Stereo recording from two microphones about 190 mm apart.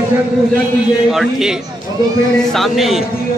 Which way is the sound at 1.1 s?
Centre (ahead or behind).